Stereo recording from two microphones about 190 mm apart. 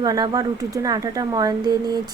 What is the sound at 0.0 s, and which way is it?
Speech, 20° right (ahead or behind).